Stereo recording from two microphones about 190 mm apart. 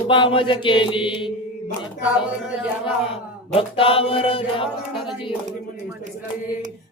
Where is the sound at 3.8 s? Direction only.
30° left (ahead or behind).